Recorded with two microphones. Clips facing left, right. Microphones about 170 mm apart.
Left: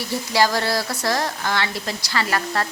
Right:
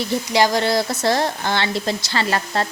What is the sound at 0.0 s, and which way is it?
Speech, 20° right (ahead or behind).